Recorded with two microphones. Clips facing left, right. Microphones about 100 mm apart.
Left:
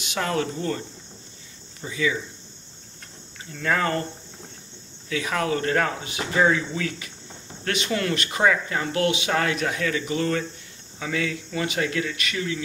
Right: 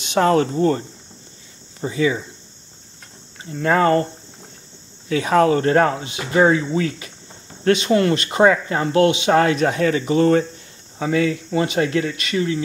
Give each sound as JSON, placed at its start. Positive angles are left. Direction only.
{"t": 0.0, "sound": "speech", "side_deg": -35}
{"t": 3.5, "sound": "speech", "side_deg": -35}
{"t": 5.1, "sound": "speech", "side_deg": -35}